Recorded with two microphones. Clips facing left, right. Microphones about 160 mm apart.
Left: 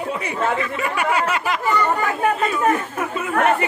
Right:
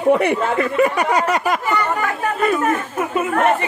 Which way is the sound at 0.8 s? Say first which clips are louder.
Right 4 dB; 40° right (ahead or behind).